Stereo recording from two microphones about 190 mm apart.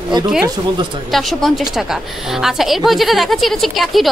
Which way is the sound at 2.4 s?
Centre (ahead or behind).